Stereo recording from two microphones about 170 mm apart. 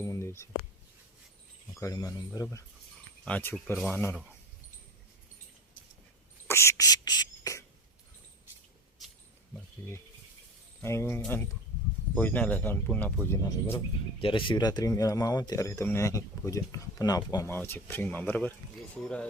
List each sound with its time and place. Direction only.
0.0 s a sound: 15° left (ahead or behind)
1.8 s speech: 20° left (ahead or behind)
3.2 s speech: 5° left (ahead or behind)
6.5 s beatboxing: 15° left (ahead or behind)
10.8 s speech: 15° left (ahead or behind)
14.2 s speech: 30° left (ahead or behind); by 18.5 s 10° left (ahead or behind)